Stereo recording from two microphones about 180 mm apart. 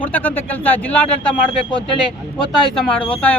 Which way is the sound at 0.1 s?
10° left (ahead or behind).